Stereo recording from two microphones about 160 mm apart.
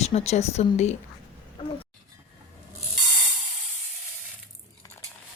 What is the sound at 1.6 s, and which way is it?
Speech, 30° left (ahead or behind).